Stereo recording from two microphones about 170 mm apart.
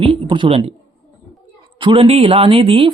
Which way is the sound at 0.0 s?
30° right (ahead or behind).